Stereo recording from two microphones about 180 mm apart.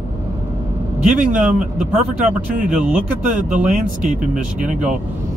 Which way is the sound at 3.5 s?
45° right (ahead or behind).